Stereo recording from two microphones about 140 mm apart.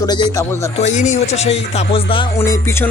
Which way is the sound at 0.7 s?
55° left (ahead or behind).